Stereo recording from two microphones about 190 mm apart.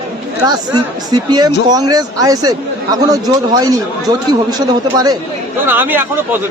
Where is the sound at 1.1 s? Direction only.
20° right (ahead or behind).